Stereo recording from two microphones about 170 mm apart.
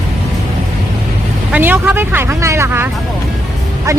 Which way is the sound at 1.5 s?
10° right (ahead or behind).